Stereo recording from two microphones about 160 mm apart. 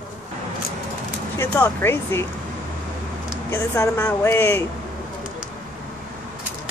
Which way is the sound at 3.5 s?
15° left (ahead or behind).